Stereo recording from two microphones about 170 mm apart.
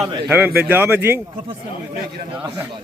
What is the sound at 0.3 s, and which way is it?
Speech, 10° right (ahead or behind).